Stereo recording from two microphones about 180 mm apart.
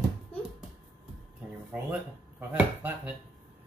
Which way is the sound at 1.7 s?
5° right (ahead or behind).